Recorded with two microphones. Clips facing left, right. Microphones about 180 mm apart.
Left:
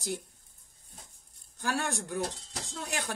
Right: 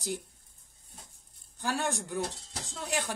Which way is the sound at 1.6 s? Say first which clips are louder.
Even; 15° right (ahead or behind).